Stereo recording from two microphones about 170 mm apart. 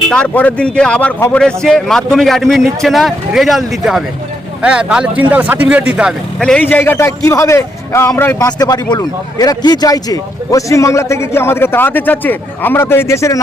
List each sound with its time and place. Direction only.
0.1 s speech: 5° left (ahead or behind)